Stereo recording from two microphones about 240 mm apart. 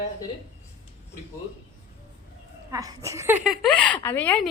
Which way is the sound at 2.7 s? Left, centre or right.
Centre.